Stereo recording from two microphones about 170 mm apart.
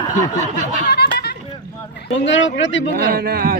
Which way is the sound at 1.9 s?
85° left.